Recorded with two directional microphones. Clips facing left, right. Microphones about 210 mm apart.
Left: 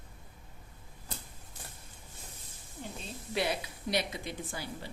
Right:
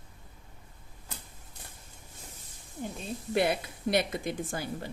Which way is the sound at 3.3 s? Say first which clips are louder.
Right 5 dB; 55° right (ahead or behind).